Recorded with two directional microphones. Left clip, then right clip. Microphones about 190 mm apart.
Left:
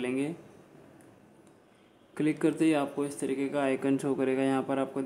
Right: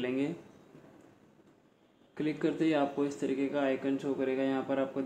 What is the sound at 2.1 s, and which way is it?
A man's voice, 30° left (ahead or behind).